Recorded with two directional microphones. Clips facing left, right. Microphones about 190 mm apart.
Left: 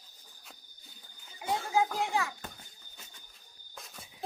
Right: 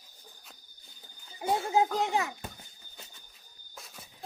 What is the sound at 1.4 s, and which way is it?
A child's voice, 30° right (ahead or behind).